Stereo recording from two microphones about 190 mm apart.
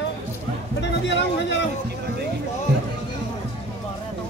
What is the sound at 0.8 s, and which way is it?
Speech, 65° left (ahead or behind).